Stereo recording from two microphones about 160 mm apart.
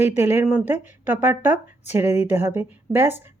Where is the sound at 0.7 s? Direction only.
50° left (ahead or behind).